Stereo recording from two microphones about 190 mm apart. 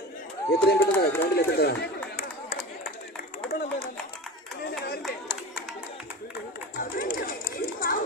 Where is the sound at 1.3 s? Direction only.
60° left (ahead or behind).